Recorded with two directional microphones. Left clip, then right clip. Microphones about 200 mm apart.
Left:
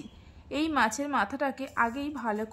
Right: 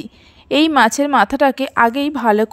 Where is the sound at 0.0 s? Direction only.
40° right (ahead or behind).